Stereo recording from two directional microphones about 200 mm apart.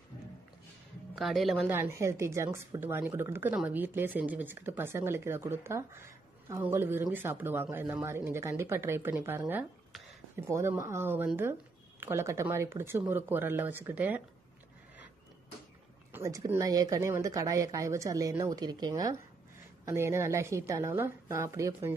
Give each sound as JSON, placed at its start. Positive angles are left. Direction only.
{"t": 1.1, "sound": "a man's voice", "side_deg": 0}
{"t": 1.7, "sound": "speech", "side_deg": -15}
{"t": 16.1, "sound": "speech", "side_deg": -15}